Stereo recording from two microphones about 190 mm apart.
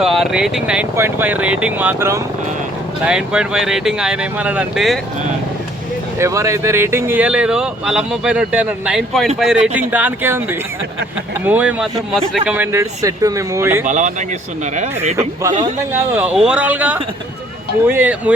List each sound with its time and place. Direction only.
0.0 s speech: centre (ahead or behind)
6.1 s speech: 15° right (ahead or behind)
13.8 s speech: 40° right (ahead or behind)
15.1 s speech: 15° right (ahead or behind)